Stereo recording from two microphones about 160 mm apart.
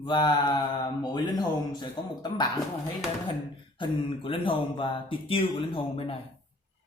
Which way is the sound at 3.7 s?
30° left (ahead or behind).